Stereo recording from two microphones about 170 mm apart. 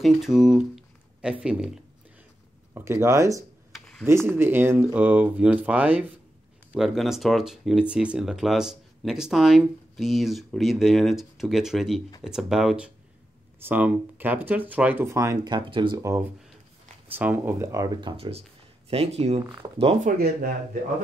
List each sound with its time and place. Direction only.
0.0 s speech: centre (ahead or behind)
2.7 s speech: 15° right (ahead or behind)
3.7 s a sound: 5° left (ahead or behind)
4.0 s speech: 15° right (ahead or behind); by 16.0 s 30° right (ahead or behind)
16.0 s speech: 15° right (ahead or behind)
18.1 s speech: 35° right (ahead or behind)
20.1 s speech: 60° right (ahead or behind)